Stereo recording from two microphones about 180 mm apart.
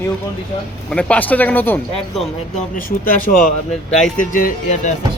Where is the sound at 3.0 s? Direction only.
50° left (ahead or behind).